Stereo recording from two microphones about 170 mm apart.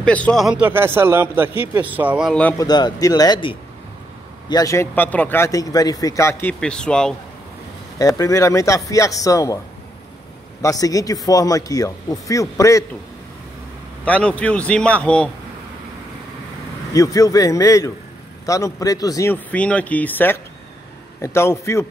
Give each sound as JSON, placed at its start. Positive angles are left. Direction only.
{"t": 0.0, "sound": "a man's voice", "side_deg": 5}
{"t": 2.5, "sound": "a man's voice", "side_deg": 25}
{"t": 6.6, "sound": "speech", "side_deg": 5}
{"t": 8.0, "sound": "speech", "side_deg": 20}
{"t": 10.6, "sound": "speech", "side_deg": 20}
{"t": 14.0, "sound": "a man's voice", "side_deg": 10}
{"t": 16.9, "sound": "a man's voice", "side_deg": 20}